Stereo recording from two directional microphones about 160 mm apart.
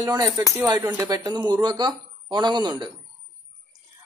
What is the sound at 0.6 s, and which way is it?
A man's voice, 15° right (ahead or behind).